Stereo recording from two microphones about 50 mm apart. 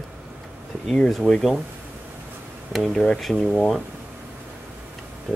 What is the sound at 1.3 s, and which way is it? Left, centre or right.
Speech, centre.